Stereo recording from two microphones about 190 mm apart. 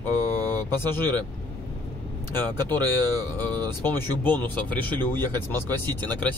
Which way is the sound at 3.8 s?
10° left (ahead or behind).